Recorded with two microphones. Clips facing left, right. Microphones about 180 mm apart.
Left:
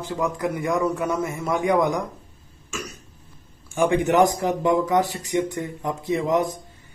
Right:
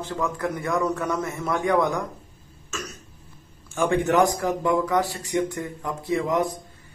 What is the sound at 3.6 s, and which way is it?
A man's voice, 15° left (ahead or behind).